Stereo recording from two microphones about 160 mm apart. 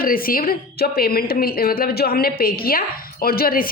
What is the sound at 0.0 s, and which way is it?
A woman's voice, 65° left (ahead or behind).